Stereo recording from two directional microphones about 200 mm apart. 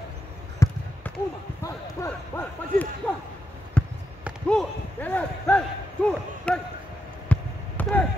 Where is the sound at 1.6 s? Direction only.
15° left (ahead or behind).